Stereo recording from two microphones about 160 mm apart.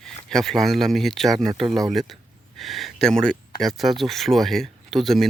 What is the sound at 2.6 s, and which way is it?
Speech, centre (ahead or behind).